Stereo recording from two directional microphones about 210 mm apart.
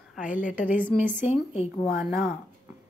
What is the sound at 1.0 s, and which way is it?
Speech, 40° left (ahead or behind).